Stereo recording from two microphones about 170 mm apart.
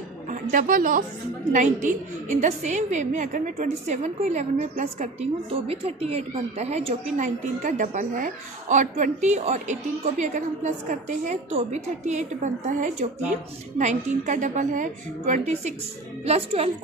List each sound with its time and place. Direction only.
0.3 s a woman's voice: 50° right (ahead or behind)